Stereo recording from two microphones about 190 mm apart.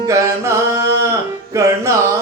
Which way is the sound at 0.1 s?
15° right (ahead or behind).